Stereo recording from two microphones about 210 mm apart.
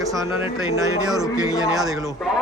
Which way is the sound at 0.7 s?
15° right (ahead or behind).